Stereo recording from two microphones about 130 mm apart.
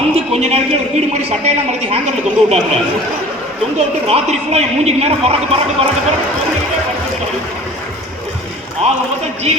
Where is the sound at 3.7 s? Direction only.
55° right (ahead or behind).